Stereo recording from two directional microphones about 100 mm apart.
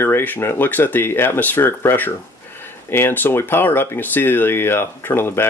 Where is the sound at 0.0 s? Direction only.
20° left (ahead or behind).